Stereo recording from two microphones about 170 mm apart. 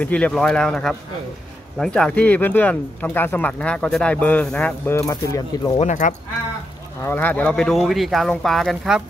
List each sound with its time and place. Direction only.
0.0 s speech: 5° left (ahead or behind)
5.8 s speech: 45° left (ahead or behind)
7.1 s speech: 10° left (ahead or behind)